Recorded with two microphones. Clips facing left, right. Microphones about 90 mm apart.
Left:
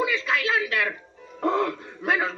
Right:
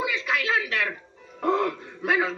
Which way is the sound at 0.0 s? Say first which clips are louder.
Left 2 dB; 20° right (ahead or behind).